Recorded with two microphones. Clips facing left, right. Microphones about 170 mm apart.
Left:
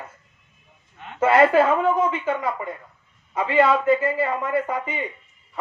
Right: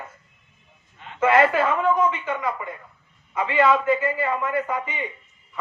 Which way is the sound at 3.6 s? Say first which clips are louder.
Left 1 dB; 30° left (ahead or behind).